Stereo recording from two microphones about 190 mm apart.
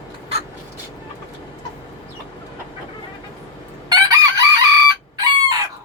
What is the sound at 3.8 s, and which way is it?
Chicken, 20° right (ahead or behind).